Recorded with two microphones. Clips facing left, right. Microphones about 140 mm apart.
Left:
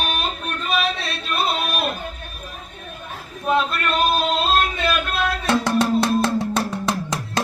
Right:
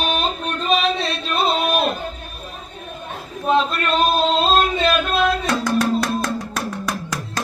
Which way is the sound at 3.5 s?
25° right (ahead or behind).